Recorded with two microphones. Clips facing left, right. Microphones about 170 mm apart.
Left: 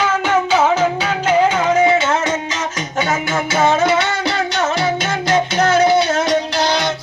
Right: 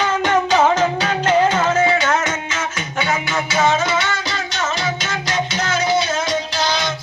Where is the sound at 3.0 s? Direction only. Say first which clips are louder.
Left 2 dB; 45° left (ahead or behind).